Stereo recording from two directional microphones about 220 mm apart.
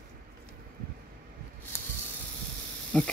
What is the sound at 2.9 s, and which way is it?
Speech, 5° left (ahead or behind).